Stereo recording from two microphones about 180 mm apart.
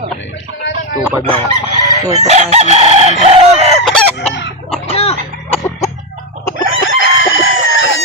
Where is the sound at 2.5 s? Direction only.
35° right (ahead or behind).